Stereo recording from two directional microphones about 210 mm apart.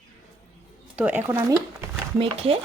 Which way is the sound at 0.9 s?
5° right (ahead or behind).